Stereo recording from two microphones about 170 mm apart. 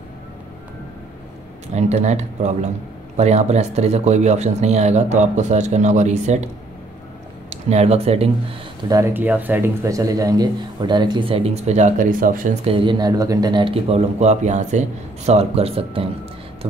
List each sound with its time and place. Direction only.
1.7 s speech: 40° right (ahead or behind)
7.7 s speech: 35° right (ahead or behind)
8.8 s speech: 20° right (ahead or behind); by 12.5 s 50° right (ahead or behind)
12.6 s speech: 30° right (ahead or behind)